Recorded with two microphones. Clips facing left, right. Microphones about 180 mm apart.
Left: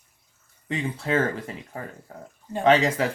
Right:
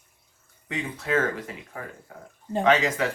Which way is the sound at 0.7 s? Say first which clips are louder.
Left 1 dB; 30° left (ahead or behind).